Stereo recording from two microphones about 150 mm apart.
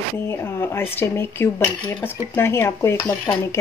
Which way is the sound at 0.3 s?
15° left (ahead or behind).